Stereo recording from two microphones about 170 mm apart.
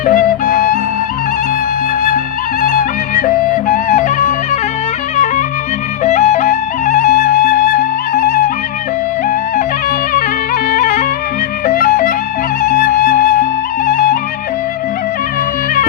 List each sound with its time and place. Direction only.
0.0 s music: 55° left (ahead or behind)
2.0 s music: 55° left (ahead or behind)
6.1 s music: 45° left (ahead or behind)
10.2 s music: 60° left (ahead or behind)